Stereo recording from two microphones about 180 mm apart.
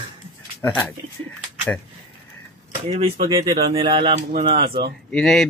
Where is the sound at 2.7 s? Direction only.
45° right (ahead or behind).